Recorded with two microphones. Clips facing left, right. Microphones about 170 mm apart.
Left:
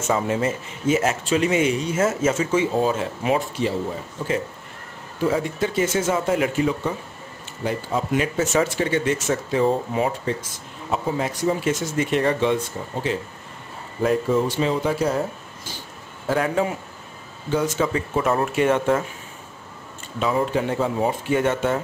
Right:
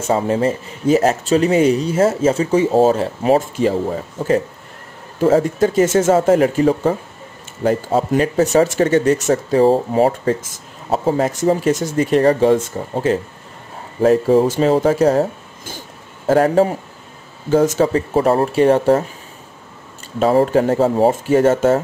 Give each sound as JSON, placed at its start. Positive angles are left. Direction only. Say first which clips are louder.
{"t": 0.0, "sound": "speech", "louder": "right 5 dB", "side_deg": -30}
{"t": 5.2, "sound": "speech", "louder": "right 8 dB", "side_deg": -40}
{"t": 20.2, "sound": "speech", "louder": "right 8 dB", "side_deg": -40}